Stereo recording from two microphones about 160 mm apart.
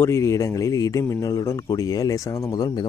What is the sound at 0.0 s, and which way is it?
Speech, 15° left (ahead or behind).